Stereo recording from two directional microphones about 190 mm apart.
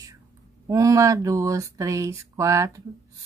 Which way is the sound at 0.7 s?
20° right (ahead or behind).